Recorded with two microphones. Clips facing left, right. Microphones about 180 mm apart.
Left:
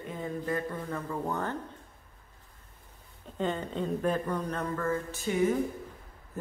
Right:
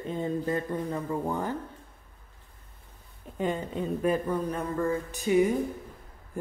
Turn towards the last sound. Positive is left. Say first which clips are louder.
# right 4 dB
turn(degrees=-15)  # may be behind; listen again after turning